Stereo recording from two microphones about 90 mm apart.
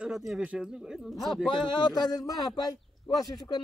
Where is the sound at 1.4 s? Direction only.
65° left (ahead or behind); by 2.7 s 45° left (ahead or behind).